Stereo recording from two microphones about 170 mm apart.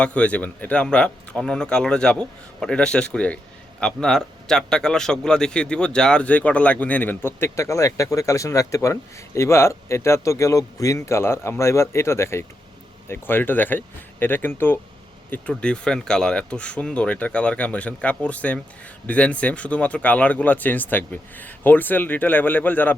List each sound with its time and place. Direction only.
0.0 s a man's voice: 5° left (ahead or behind)